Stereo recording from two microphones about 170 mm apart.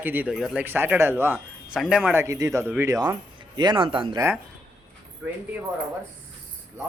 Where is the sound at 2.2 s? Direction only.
20° right (ahead or behind).